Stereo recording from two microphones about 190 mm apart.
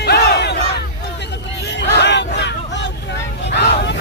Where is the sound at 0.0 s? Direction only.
55° left (ahead or behind).